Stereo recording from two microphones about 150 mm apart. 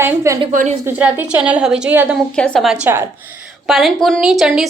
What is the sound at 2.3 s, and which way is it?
Speech, 5° left (ahead or behind).